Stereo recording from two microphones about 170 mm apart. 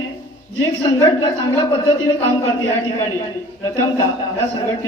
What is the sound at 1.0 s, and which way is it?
A woman's voice, 20° left (ahead or behind).